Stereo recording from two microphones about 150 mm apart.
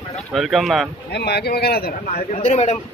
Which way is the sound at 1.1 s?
90° left.